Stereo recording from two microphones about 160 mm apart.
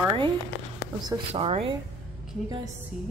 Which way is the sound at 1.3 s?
40° right (ahead or behind).